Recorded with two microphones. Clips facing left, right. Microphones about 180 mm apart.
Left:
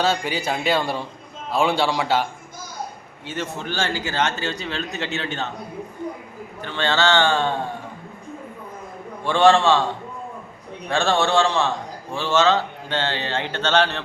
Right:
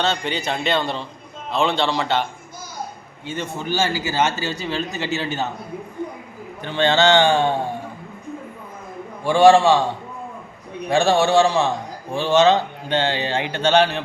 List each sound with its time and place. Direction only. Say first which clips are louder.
0.0 s a man's voice: left 1 dB; 5° left (ahead or behind)
3.2 s a man's voice: right 2 dB; centre (ahead or behind)
6.6 s a man's voice: right 4 dB; 15° right (ahead or behind)
9.2 s a man's voice: right 3 dB; 10° right (ahead or behind)
10.8 s a man's voice: right 4 dB; 15° right (ahead or behind)